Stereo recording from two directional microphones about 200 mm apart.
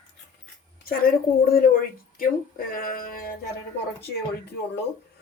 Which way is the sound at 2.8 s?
45° left (ahead or behind).